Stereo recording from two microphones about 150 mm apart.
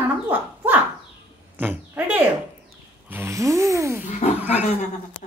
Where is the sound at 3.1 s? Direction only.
20° right (ahead or behind).